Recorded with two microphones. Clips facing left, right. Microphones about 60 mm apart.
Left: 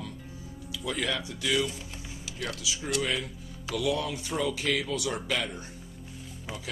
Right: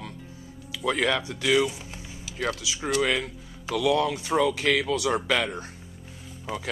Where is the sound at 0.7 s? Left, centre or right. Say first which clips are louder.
Right 7 dB; right.